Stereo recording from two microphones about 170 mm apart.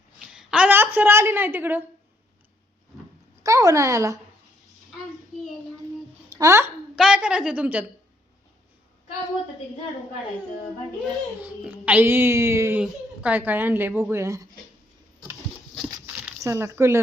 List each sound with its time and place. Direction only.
0.3 s a woman's voice: 5° right (ahead or behind)
3.4 s a woman's voice: 20° right (ahead or behind)
6.3 s speech: 20° right (ahead or behind)
6.9 s a woman's voice: 5° right (ahead or behind)
11.4 s a woman's voice: 10° right (ahead or behind)
15.9 s a sound: 15° right (ahead or behind)